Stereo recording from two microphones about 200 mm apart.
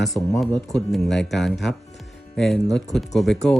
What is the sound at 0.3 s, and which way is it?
Speech, centre (ahead or behind).